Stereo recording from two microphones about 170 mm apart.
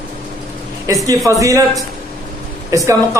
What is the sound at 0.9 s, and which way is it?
A man's voice, 20° right (ahead or behind).